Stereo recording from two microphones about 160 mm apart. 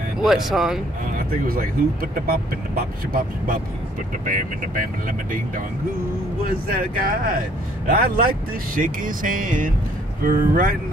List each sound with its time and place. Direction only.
0.2 s speech: centre (ahead or behind)
1.1 s speech: 65° right (ahead or behind)
6.7 s speech: 60° right (ahead or behind)